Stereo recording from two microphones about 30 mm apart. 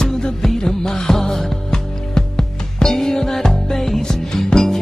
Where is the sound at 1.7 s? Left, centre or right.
Left.